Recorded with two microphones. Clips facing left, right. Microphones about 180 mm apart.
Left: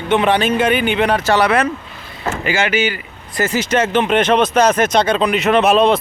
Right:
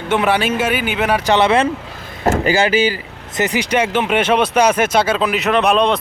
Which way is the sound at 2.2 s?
45° right (ahead or behind).